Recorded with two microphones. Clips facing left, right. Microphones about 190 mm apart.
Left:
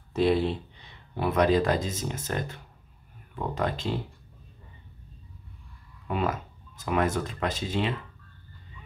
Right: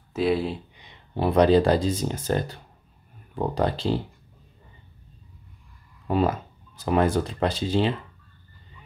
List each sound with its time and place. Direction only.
0.1 s speech: centre (ahead or behind)
1.1 s speech: 30° right (ahead or behind)
6.0 s speech: 35° right (ahead or behind)